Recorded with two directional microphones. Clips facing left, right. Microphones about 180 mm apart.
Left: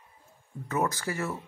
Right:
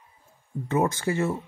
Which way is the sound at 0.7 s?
25° right (ahead or behind).